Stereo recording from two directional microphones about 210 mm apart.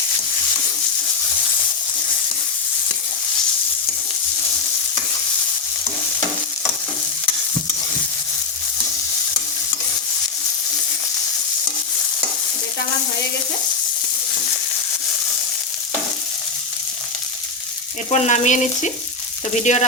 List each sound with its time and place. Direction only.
18.1 s frying: 35° left (ahead or behind)